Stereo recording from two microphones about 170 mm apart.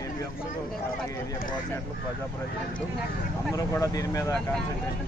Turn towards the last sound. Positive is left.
turn(degrees=20)  # may be behind; listen again after turning